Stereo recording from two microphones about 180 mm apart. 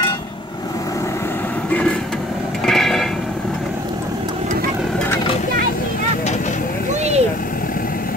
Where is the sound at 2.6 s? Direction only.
Centre (ahead or behind).